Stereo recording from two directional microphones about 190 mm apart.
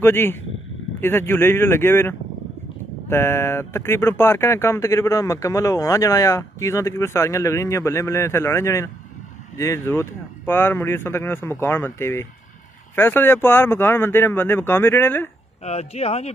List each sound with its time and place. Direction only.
0.0 s speech: 10° left (ahead or behind)
15.6 s speech: 35° left (ahead or behind)